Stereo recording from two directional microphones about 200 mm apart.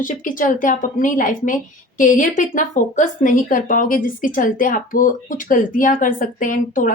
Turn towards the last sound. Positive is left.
turn(degrees=40)  # may be behind; listen again after turning